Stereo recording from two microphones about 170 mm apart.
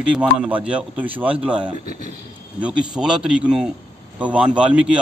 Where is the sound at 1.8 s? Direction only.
45° right (ahead or behind).